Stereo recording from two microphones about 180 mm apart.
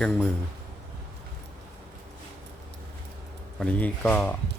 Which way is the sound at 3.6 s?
5° left (ahead or behind).